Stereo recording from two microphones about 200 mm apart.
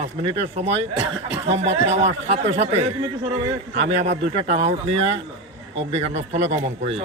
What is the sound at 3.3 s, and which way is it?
Speech, 20° right (ahead or behind).